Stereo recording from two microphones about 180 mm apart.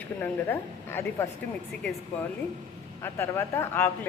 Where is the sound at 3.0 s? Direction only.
15° left (ahead or behind).